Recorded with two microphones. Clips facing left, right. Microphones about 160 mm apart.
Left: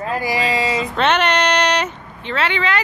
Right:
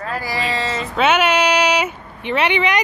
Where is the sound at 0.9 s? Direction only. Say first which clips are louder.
Right 3 dB; 5° right (ahead or behind).